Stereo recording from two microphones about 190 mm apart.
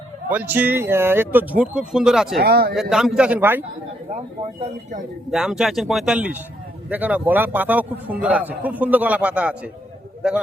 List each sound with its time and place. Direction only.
0.3 s a man's voice: 10° right (ahead or behind)
2.4 s speech: 55° right (ahead or behind)
2.9 s a man's voice: 5° right (ahead or behind)
4.6 s speech: 40° right (ahead or behind)
5.3 s a man's voice: 5° right (ahead or behind)